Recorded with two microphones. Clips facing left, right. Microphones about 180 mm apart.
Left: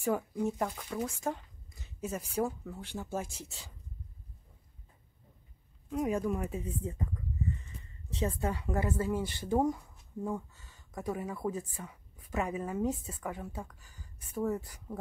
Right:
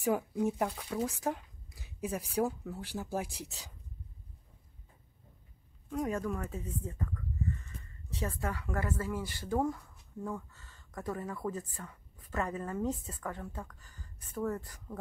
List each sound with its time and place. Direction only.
0.0 s speech: 10° right (ahead or behind)
5.9 s speech: 5° left (ahead or behind)